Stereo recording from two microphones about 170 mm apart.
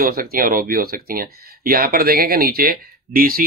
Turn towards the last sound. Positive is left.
turn(degrees=-60)  # may be behind; listen again after turning